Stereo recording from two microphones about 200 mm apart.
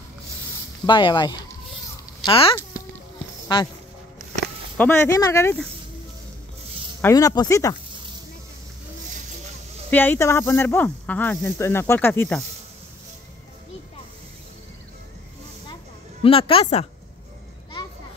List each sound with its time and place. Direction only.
0.8 s speech: 25° left (ahead or behind)
4.7 s speech: 10° left (ahead or behind)
7.0 s speech: 15° left (ahead or behind)
9.8 s speech: 10° left (ahead or behind)
15.7 s a sound: 25° left (ahead or behind)